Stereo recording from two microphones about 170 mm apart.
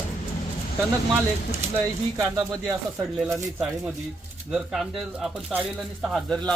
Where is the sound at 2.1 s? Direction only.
20° right (ahead or behind).